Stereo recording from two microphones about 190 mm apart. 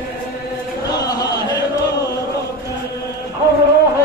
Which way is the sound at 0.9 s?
20° left (ahead or behind).